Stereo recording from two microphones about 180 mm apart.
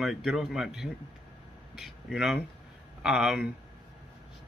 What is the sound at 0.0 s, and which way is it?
Speech, centre (ahead or behind).